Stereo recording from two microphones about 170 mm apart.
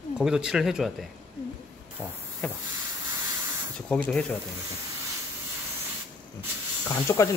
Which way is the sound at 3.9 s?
5° left (ahead or behind).